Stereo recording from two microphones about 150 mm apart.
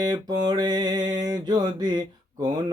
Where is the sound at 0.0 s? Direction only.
25° right (ahead or behind).